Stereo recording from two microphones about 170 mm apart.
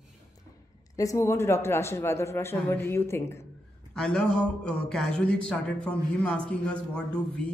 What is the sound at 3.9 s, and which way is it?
A man's voice, 5° left (ahead or behind).